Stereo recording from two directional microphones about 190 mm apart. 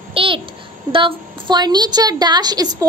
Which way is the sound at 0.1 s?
30° right (ahead or behind).